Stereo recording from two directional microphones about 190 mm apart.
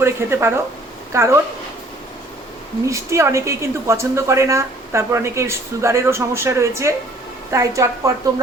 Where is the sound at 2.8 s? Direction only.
15° right (ahead or behind).